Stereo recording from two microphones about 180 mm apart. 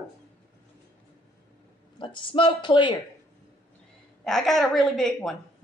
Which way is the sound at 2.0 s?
25° left (ahead or behind).